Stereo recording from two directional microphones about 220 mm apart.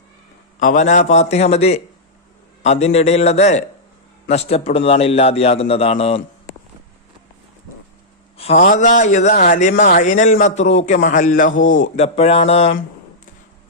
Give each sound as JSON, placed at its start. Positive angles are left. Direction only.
{"t": 0.6, "sound": "a man's voice", "side_deg": 35}
{"t": 8.4, "sound": "a man's voice", "side_deg": 30}